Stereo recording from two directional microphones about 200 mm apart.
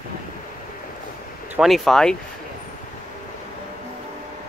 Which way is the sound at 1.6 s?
Centre (ahead or behind).